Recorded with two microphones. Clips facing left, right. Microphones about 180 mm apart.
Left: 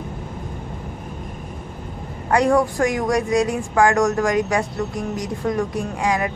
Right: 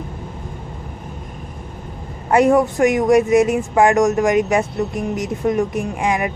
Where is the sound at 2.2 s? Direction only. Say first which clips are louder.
Right 3 dB; 20° right (ahead or behind).